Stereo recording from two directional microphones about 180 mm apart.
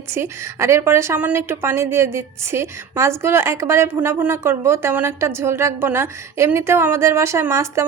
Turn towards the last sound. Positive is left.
turn(degrees=-15)  # may be behind; listen again after turning